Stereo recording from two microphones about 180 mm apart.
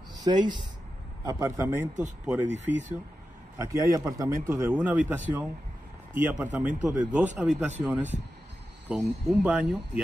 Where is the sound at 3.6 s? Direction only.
15° right (ahead or behind).